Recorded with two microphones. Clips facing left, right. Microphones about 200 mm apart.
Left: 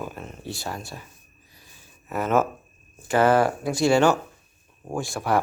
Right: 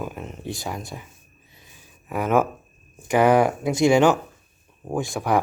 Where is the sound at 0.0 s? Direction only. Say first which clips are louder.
Right 3 dB; 15° right (ahead or behind).